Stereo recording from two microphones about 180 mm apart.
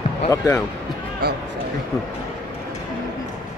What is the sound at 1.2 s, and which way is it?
Speech, 65° right (ahead or behind).